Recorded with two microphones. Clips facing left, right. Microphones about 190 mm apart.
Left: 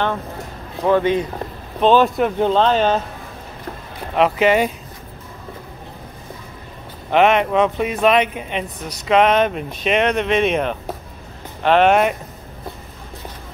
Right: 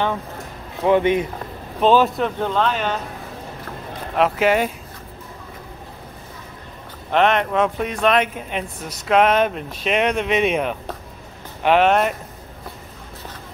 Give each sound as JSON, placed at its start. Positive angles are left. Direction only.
{"t": 0.8, "sound": "speech", "side_deg": -20}
{"t": 1.8, "sound": "speech", "side_deg": -5}
{"t": 2.2, "sound": "speech", "side_deg": 15}
{"t": 2.5, "sound": "speech", "side_deg": 30}
{"t": 4.1, "sound": "speech", "side_deg": 0}
{"t": 7.1, "sound": "speech", "side_deg": 5}